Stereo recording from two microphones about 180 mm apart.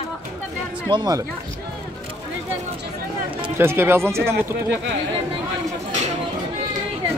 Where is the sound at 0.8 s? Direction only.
25° right (ahead or behind).